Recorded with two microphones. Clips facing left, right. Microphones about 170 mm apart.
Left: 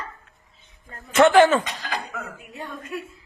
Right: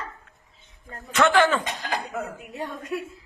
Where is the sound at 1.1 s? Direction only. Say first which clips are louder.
Left 5 dB; 20° left (ahead or behind).